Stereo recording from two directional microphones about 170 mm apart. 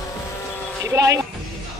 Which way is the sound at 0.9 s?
15° right (ahead or behind).